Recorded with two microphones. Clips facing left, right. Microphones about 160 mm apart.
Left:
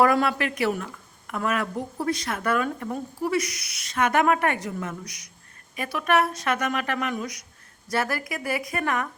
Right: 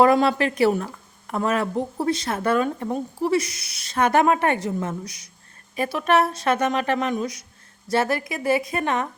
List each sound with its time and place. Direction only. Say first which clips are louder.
0.0 s a woman's voice: right 4 dB; 25° right (ahead or behind)